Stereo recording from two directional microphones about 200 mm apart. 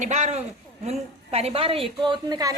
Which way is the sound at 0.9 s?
30° right (ahead or behind).